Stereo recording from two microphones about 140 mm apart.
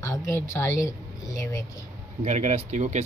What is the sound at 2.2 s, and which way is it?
Speech, 50° right (ahead or behind).